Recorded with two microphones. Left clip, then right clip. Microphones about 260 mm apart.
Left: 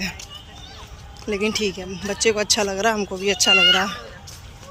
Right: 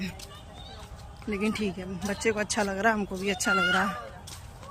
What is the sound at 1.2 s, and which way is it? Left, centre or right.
Speech, centre.